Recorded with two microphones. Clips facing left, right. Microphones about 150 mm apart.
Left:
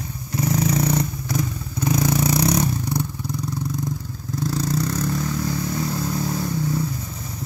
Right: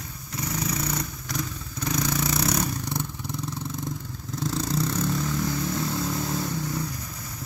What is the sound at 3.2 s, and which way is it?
Vehicle, centre (ahead or behind).